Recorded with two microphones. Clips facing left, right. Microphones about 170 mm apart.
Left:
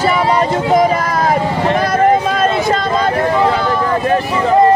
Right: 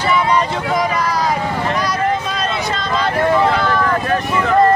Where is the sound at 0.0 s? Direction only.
45° left (ahead or behind).